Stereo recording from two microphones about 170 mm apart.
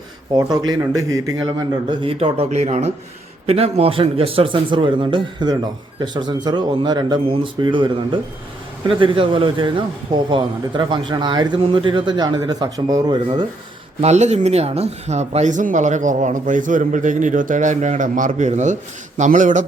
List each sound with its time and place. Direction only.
0.3 s a man's voice: 25° right (ahead or behind)
14.0 s speech: 40° right (ahead or behind)